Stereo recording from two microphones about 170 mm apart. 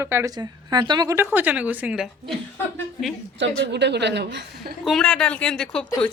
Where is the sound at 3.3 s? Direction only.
90° right.